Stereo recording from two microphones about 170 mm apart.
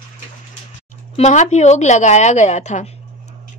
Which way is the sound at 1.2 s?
45° left (ahead or behind).